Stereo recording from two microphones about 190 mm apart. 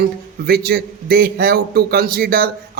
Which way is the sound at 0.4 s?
55° right (ahead or behind).